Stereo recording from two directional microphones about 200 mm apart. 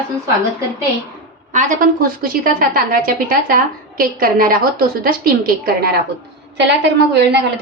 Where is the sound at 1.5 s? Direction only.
40° right (ahead or behind); by 7.4 s 55° right (ahead or behind).